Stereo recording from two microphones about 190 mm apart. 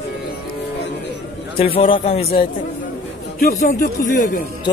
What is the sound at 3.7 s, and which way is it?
Speech, 45° left (ahead or behind).